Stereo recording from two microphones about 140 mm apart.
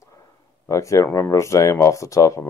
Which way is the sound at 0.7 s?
20° left (ahead or behind).